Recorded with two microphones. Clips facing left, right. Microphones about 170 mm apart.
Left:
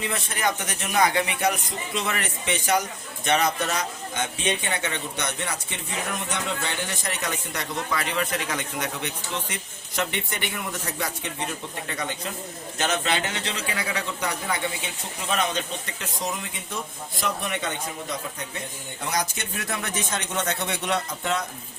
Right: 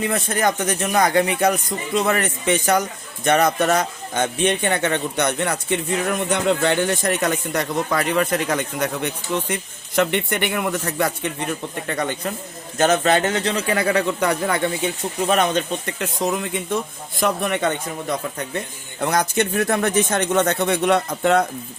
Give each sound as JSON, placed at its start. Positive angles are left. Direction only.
{"t": 0.0, "sound": "a man's voice", "side_deg": -45}
{"t": 18.9, "sound": "a man's voice", "side_deg": -60}